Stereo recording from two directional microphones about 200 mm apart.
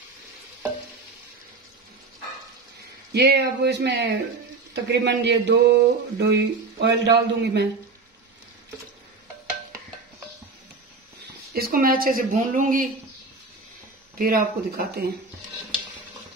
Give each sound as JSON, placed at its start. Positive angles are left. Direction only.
{"t": 3.1, "sound": "speech", "side_deg": -55}
{"t": 11.5, "sound": "speech", "side_deg": -45}
{"t": 14.1, "sound": "speech", "side_deg": -50}